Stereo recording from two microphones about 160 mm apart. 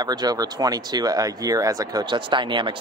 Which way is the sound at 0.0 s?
25° right (ahead or behind).